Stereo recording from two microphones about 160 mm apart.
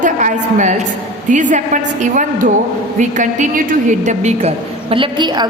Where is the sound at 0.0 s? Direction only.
50° right (ahead or behind).